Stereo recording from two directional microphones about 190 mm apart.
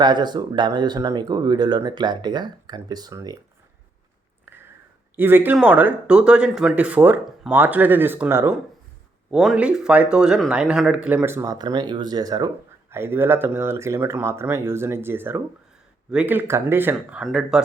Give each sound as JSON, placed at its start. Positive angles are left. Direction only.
{"t": 0.0, "sound": "speech", "side_deg": -25}
{"t": 5.1, "sound": "speech", "side_deg": -10}